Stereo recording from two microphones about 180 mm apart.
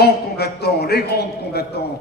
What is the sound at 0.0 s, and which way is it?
A man's voice, 60° left (ahead or behind).